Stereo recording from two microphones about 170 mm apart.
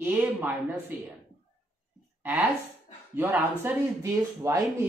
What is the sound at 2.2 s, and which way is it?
Speech, 15° right (ahead or behind).